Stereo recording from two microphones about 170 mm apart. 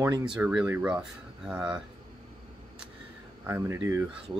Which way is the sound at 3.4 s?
15° right (ahead or behind).